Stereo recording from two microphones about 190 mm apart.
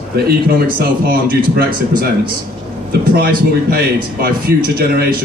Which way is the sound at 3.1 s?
55° right (ahead or behind).